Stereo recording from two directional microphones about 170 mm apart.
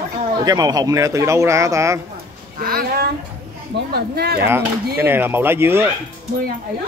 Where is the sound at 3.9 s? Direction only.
70° right (ahead or behind).